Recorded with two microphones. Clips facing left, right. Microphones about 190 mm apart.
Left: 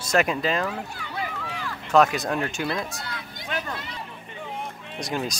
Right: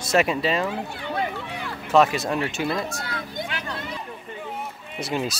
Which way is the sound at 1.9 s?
5° right (ahead or behind).